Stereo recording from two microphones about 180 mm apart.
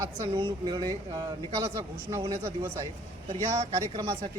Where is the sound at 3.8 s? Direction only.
20° right (ahead or behind).